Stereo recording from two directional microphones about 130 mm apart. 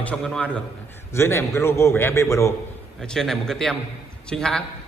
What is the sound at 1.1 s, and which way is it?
A man's voice, 20° left (ahead or behind).